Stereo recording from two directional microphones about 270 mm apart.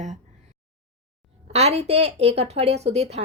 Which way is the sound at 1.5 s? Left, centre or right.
Right.